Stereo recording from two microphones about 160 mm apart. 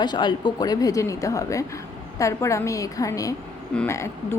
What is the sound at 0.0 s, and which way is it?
A woman's voice, 30° left (ahead or behind).